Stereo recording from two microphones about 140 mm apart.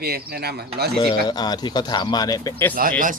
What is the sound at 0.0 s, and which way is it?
Speech, 90° right.